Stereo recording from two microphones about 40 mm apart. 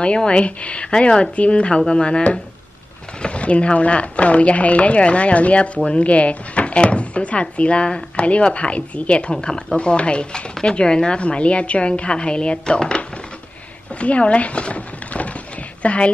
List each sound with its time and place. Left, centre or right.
0.0 s speech: left
13.9 s a woman's voice: left